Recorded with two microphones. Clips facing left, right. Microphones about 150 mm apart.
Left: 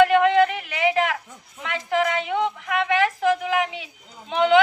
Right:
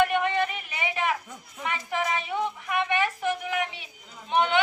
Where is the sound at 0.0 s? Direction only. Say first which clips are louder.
Left 8 dB; 90° left.